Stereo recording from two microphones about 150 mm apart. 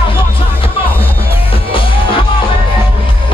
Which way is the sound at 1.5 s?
35° left (ahead or behind).